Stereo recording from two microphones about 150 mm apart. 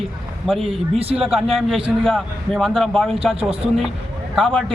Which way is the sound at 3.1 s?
40° right (ahead or behind).